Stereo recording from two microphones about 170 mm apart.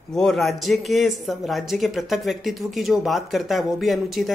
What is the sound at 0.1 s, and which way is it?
Speech, centre (ahead or behind).